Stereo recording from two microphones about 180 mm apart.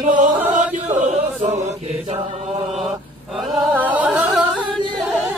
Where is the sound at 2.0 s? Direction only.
35° right (ahead or behind).